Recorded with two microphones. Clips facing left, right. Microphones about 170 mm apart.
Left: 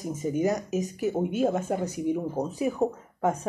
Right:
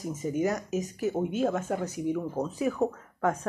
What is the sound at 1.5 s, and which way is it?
Speech, 35° left (ahead or behind).